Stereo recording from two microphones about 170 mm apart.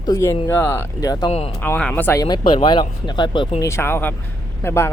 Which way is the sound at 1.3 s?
35° left (ahead or behind).